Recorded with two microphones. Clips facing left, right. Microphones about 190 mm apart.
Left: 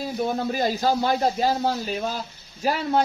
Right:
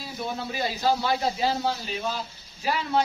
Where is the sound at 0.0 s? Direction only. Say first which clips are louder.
Left 7 dB; 45° left (ahead or behind).